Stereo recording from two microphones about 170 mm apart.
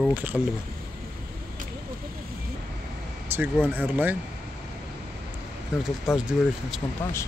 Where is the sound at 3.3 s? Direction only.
15° right (ahead or behind).